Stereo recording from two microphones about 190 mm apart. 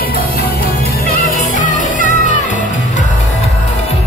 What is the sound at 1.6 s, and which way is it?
Music, 40° left (ahead or behind).